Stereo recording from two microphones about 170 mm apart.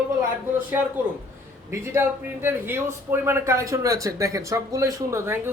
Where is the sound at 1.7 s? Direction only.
15° right (ahead or behind).